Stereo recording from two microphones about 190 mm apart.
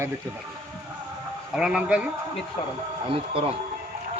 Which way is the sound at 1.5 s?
5° right (ahead or behind).